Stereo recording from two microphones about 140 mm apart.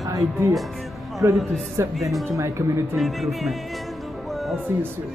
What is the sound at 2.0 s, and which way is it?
Speech, centre (ahead or behind).